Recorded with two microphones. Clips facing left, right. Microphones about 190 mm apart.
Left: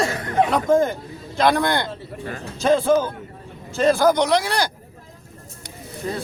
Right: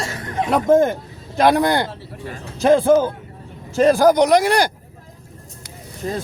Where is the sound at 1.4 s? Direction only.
10° right (ahead or behind).